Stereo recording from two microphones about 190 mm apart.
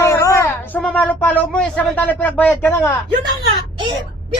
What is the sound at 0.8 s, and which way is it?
Speech, 5° left (ahead or behind).